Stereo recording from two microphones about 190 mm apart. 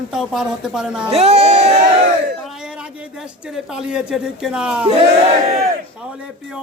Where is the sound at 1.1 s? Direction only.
35° right (ahead or behind).